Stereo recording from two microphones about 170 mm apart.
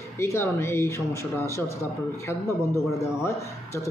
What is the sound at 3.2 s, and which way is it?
Speech, 15° left (ahead or behind).